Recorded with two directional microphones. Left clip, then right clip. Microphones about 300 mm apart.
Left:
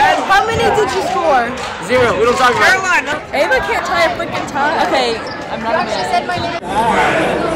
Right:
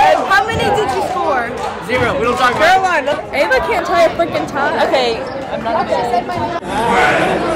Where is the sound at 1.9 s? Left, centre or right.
Centre.